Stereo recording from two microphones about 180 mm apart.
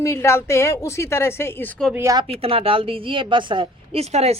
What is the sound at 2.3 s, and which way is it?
A woman's voice, 30° right (ahead or behind).